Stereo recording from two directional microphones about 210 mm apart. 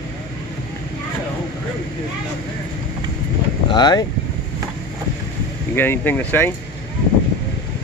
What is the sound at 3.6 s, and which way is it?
Speech, 20° left (ahead or behind).